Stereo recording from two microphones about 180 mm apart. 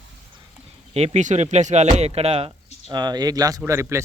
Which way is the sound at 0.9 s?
35° right (ahead or behind).